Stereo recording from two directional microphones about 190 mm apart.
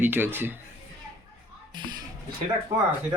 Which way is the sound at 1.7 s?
25° right (ahead or behind).